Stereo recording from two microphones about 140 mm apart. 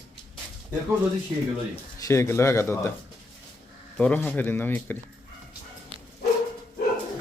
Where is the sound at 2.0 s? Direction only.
20° left (ahead or behind).